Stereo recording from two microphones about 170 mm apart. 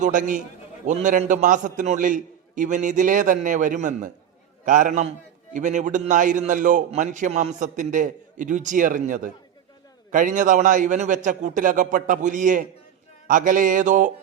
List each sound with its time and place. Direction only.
0.0 s a man's voice: 50° right (ahead or behind)